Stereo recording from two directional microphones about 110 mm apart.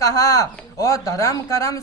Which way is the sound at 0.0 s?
30° left (ahead or behind).